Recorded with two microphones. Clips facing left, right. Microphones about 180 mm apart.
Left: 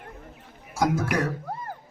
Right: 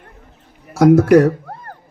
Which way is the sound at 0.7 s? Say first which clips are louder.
Right 15 dB; 70° right (ahead or behind).